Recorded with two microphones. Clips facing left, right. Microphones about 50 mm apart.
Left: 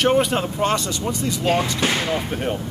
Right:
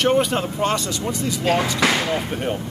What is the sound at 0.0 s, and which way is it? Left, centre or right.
Speech, centre.